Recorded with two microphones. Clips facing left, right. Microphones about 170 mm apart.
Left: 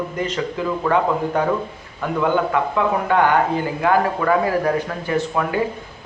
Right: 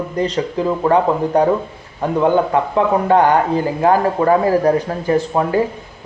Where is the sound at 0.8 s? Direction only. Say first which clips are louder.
Right 4 dB; 35° right (ahead or behind).